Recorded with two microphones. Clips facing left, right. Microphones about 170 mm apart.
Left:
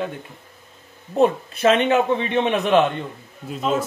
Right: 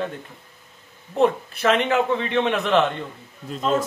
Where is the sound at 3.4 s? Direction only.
5° left (ahead or behind).